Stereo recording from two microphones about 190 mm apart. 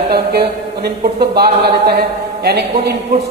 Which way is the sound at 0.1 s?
55° right (ahead or behind).